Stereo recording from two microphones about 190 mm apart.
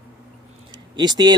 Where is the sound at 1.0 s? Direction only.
20° right (ahead or behind).